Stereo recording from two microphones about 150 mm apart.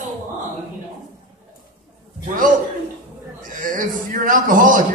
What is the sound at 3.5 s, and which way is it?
A man's voice, 60° right (ahead or behind).